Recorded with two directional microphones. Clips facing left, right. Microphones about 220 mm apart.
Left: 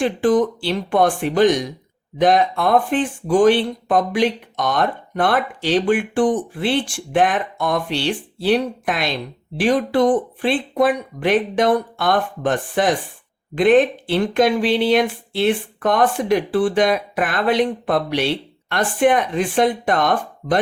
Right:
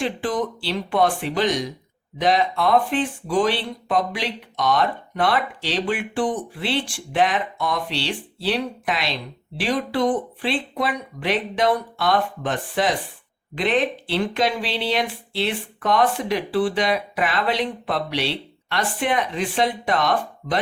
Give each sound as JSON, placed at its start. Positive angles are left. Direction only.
{"t": 0.0, "sound": "speech", "side_deg": 50}